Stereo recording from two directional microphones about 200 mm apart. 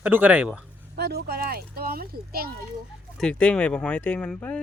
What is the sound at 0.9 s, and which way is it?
A child's voice, 55° right (ahead or behind).